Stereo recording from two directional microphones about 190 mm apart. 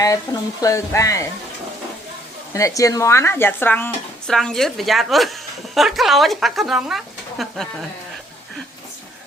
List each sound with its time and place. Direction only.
0.3 s speech: 15° left (ahead or behind)
2.5 s speech: 15° left (ahead or behind); by 7.7 s centre (ahead or behind)